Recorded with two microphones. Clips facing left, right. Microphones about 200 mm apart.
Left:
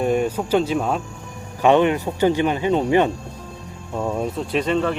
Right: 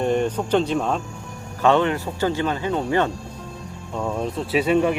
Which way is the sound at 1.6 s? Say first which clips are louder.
Left 3 dB; 15° left (ahead or behind).